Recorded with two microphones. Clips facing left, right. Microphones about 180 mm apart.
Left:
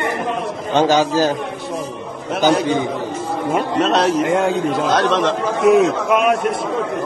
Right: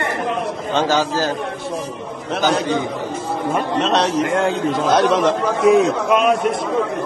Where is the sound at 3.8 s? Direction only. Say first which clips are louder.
Left 3 dB; 5° left (ahead or behind).